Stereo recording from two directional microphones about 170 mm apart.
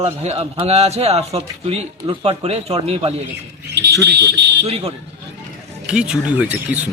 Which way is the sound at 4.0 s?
80° right.